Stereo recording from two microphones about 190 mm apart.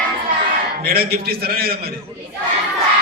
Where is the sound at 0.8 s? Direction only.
55° right (ahead or behind).